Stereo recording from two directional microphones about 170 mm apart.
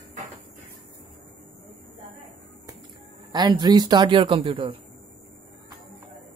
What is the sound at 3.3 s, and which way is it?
Speech, 25° right (ahead or behind).